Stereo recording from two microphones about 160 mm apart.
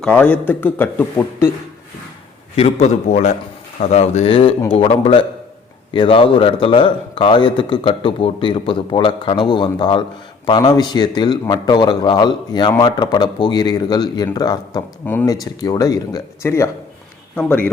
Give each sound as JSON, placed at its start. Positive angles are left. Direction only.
{"t": 0.0, "sound": "a man's voice", "side_deg": 10}
{"t": 2.6, "sound": "a man's voice", "side_deg": 40}